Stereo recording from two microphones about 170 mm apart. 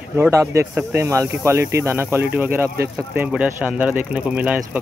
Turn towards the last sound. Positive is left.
turn(degrees=-10)  # may be behind; listen again after turning